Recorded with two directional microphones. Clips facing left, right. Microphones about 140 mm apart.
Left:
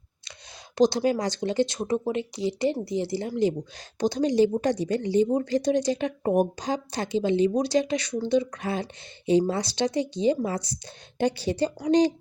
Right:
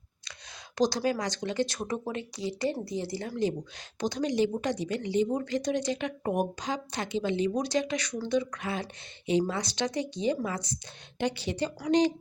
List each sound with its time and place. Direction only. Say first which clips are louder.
0.8 s a woman's voice: left 5 dB; 25° left (ahead or behind)